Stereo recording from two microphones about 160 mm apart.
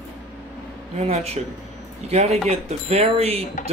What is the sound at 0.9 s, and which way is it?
Speech, 40° right (ahead or behind).